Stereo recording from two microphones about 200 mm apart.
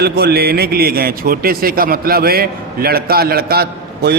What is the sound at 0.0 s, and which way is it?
A man's voice, 50° right (ahead or behind).